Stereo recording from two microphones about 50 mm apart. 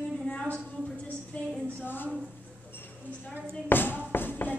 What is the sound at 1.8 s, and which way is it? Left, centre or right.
Speech, left.